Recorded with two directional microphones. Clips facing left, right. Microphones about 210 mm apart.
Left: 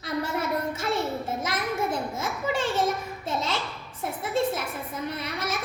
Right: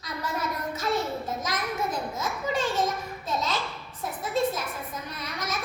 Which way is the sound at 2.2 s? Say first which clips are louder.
Right 1 dB; 25° left (ahead or behind).